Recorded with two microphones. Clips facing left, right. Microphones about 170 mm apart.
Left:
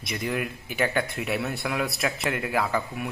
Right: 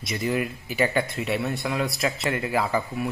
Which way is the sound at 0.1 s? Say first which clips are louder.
Right 3 dB; centre (ahead or behind).